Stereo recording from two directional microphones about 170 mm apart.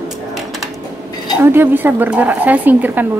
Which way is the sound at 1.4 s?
15° right (ahead or behind).